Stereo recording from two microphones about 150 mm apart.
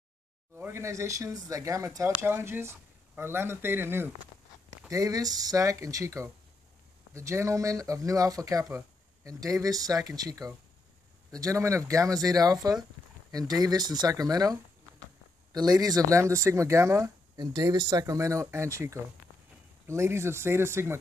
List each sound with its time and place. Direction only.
0.6 s speech: 15° right (ahead or behind)